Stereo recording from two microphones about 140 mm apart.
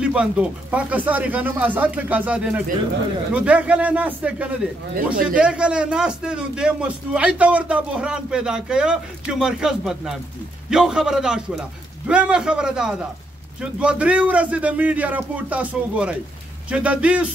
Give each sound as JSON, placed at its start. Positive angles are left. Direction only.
{"t": 0.0, "sound": "a man's voice", "side_deg": -5}
{"t": 4.9, "sound": "speech", "side_deg": -80}
{"t": 5.3, "sound": "a man's voice", "side_deg": -5}